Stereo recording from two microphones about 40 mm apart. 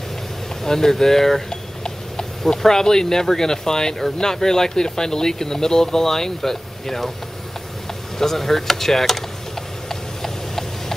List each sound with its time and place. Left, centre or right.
0.7 s speech: centre
8.2 s speech: centre
9.8 s clip-clop: centre